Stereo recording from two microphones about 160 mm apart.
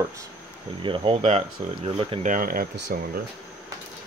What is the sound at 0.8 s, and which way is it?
Speech, 35° right (ahead or behind).